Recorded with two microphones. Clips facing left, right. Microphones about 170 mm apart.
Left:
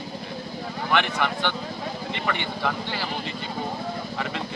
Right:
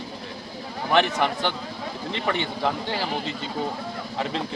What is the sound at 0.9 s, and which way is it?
Speech, 40° right (ahead or behind).